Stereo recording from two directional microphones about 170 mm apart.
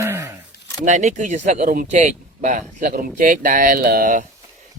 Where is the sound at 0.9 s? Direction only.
45° right (ahead or behind).